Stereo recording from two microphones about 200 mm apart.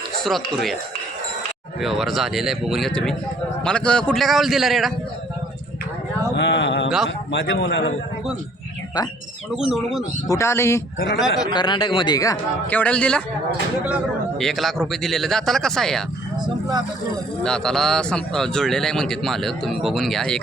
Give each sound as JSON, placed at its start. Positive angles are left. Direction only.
{"t": 0.3, "sound": "speech", "side_deg": 0}
{"t": 1.8, "sound": "speech", "side_deg": 0}
{"t": 6.3, "sound": "a man's voice", "side_deg": 60}
{"t": 9.6, "sound": "speech", "side_deg": 0}
{"t": 10.2, "sound": "a man's voice", "side_deg": 15}
{"t": 17.4, "sound": "speech", "side_deg": 5}